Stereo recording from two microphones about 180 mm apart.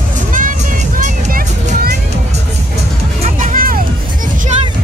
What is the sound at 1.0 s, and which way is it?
Music, 55° right (ahead or behind).